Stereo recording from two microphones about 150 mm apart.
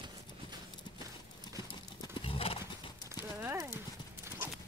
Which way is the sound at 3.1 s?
15° right (ahead or behind).